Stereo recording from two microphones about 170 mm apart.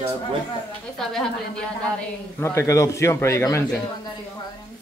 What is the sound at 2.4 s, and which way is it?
A man's voice, 15° left (ahead or behind).